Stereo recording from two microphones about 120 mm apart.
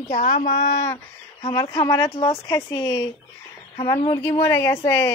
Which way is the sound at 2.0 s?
45° left (ahead or behind).